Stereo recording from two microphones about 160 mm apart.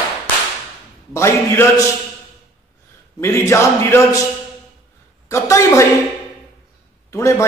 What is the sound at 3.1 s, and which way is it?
A man's voice, 15° left (ahead or behind).